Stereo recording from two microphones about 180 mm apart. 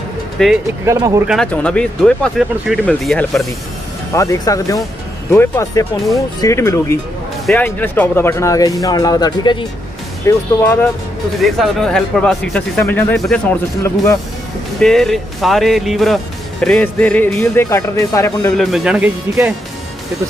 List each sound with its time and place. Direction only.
0.4 s speech: 5° left (ahead or behind)
0.8 s speech: 15° right (ahead or behind)
1.2 s speech: centre (ahead or behind)
4.1 s speech: 15° left (ahead or behind)
10.2 s speech: 10° left (ahead or behind)
11.3 s speech: centre (ahead or behind)
14.8 s speech: centre (ahead or behind)
18.6 s speech: 5° right (ahead or behind)